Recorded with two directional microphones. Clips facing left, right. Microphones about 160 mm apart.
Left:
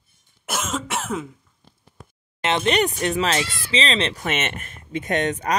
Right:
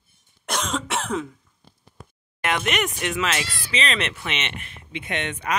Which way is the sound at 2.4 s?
30° left (ahead or behind).